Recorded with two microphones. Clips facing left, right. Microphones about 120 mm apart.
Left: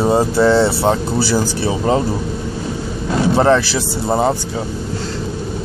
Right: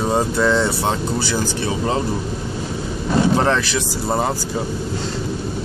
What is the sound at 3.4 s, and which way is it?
Speech, 30° left (ahead or behind).